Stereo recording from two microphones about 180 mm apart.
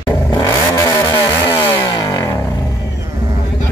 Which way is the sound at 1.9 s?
20° left (ahead or behind).